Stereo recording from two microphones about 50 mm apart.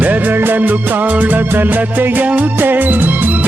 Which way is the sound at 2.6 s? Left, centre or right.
Right.